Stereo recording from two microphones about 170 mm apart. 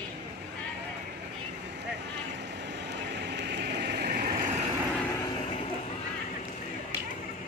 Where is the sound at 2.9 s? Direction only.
90° right; by 4.4 s 55° right (ahead or behind).